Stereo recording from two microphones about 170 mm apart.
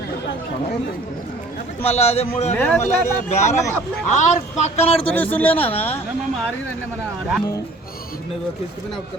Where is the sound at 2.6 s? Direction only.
10° left (ahead or behind).